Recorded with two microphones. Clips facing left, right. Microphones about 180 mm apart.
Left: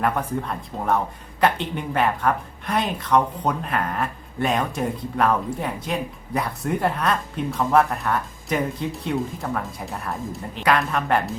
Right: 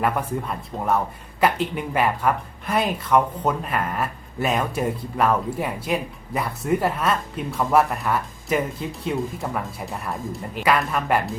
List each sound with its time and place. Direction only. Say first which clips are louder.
0.0 s a woman's voice: even; 5° right (ahead or behind)